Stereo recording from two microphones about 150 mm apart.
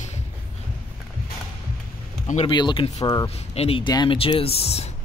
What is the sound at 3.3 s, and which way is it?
Speech, 45° left (ahead or behind).